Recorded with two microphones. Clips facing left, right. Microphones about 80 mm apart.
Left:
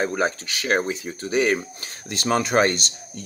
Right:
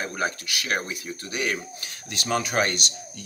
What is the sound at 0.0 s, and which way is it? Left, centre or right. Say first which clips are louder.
Speech: left 5 dB; left.